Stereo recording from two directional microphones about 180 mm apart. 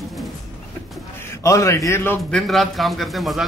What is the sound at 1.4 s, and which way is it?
Speech, 15° left (ahead or behind).